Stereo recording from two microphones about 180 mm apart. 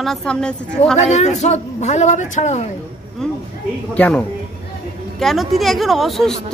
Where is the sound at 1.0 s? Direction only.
40° left (ahead or behind).